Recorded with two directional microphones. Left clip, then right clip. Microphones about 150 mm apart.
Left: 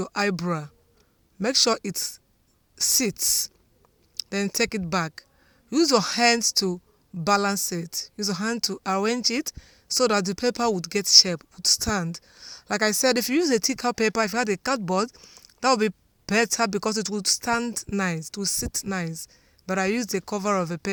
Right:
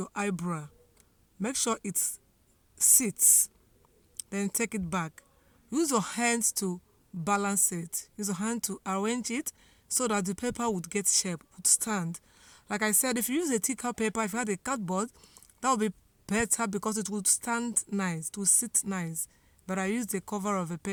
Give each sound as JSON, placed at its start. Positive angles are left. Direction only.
{"t": 0.0, "sound": "speech", "side_deg": 30}